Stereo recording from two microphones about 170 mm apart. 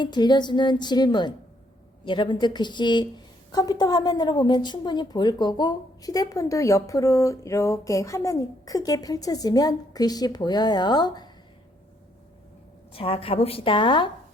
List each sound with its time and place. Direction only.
0.0 s a woman's voice: 25° left (ahead or behind)
12.9 s a woman's voice: 35° left (ahead or behind)